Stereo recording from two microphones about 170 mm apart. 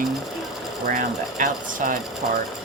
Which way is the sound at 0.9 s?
50° right (ahead or behind).